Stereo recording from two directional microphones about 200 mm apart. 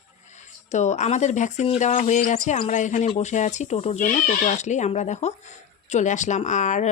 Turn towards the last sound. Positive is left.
turn(degrees=40)  # may be behind; listen again after turning